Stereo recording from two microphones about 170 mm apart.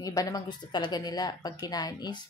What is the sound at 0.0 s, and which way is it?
A woman's voice, 20° left (ahead or behind).